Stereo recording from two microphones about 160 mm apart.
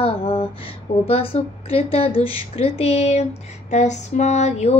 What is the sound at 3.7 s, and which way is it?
Female singing, 45° left (ahead or behind).